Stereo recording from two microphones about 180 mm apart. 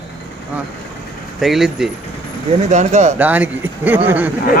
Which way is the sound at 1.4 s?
Centre (ahead or behind).